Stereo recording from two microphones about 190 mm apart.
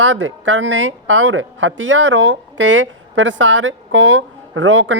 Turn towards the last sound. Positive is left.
turn(degrees=-80)